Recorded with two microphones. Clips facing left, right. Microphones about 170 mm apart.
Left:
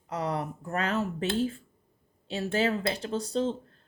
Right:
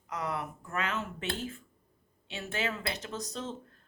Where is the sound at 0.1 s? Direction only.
30° left (ahead or behind).